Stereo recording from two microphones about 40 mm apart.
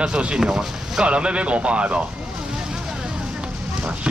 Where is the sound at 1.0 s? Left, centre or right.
Right.